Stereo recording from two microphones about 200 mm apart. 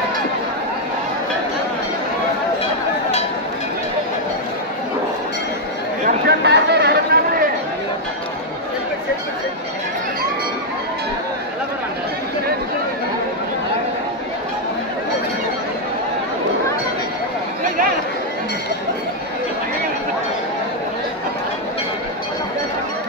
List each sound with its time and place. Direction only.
6.0 s chatter: 55° right (ahead or behind)